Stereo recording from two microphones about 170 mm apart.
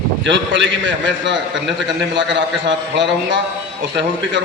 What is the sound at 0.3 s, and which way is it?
A man's voice, 90° right.